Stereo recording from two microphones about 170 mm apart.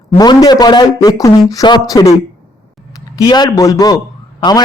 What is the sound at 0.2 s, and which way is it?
A man's voice, 25° left (ahead or behind).